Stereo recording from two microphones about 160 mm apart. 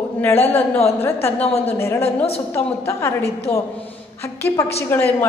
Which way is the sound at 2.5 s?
15° left (ahead or behind).